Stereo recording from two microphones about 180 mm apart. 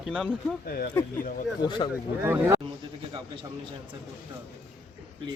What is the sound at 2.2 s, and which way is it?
Speech, 10° right (ahead or behind).